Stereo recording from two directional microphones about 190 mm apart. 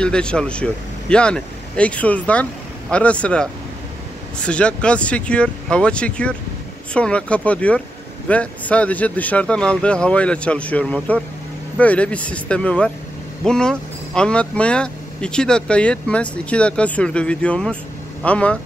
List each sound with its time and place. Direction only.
0.0 s speech: 5° left (ahead or behind)